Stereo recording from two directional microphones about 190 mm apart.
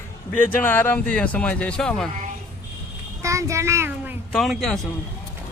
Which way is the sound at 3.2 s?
15° right (ahead or behind).